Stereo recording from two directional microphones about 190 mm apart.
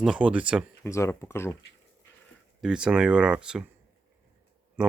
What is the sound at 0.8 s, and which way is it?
Speech, 15° left (ahead or behind).